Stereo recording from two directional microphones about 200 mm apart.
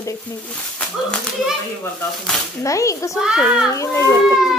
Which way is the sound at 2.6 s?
15° left (ahead or behind).